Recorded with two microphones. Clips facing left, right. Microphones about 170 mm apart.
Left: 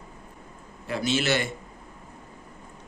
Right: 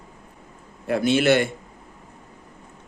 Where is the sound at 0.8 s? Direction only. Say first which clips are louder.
Right 7 dB; 55° right (ahead or behind).